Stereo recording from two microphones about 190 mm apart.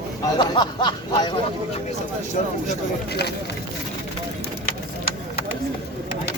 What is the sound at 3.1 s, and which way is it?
Speech, 60° left (ahead or behind).